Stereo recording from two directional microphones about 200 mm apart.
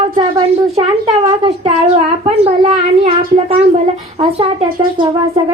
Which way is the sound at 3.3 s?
30° right (ahead or behind).